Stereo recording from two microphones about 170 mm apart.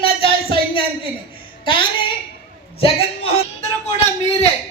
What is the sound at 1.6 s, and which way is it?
Speech, 30° left (ahead or behind).